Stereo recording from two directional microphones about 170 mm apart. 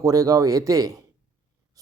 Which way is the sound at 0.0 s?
20° right (ahead or behind).